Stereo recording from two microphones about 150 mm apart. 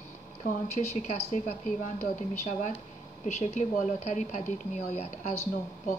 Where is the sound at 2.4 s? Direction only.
55° left (ahead or behind).